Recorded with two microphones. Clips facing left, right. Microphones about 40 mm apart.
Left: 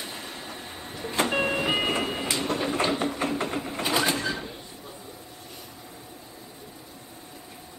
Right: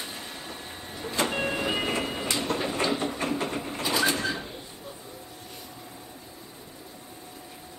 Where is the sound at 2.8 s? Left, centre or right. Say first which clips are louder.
Left 2 dB; left.